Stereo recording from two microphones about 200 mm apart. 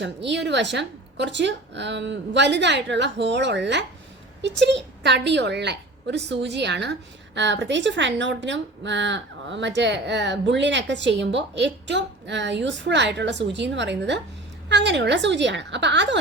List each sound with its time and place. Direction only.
0.0 s a woman's voice: 60° right (ahead or behind)